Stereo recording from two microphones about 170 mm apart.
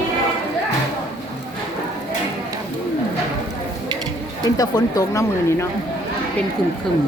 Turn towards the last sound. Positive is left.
turn(degrees=20)  # may be behind; listen again after turning